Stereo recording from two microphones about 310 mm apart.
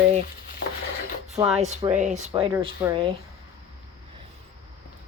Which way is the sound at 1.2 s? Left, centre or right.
Right.